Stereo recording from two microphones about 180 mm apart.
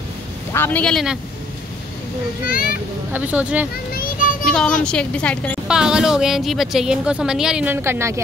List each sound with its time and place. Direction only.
0.5 s a woman's voice: 10° left (ahead or behind)
2.4 s a child's voice: 55° left (ahead or behind)
3.1 s speech: 10° right (ahead or behind)
3.9 s child singing: 50° left (ahead or behind)
4.8 s a woman's voice: 5° left (ahead or behind)
5.7 s a woman's voice: 5° right (ahead or behind)